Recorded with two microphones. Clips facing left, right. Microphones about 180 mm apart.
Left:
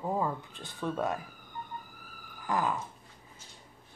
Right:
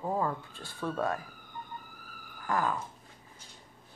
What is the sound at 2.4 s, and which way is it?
Dog, 15° left (ahead or behind).